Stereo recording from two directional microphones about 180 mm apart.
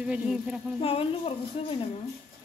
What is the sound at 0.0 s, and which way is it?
Speech, 5° right (ahead or behind).